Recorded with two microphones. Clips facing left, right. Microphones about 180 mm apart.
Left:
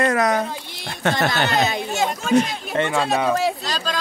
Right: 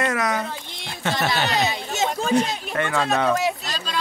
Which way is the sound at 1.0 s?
50° left (ahead or behind).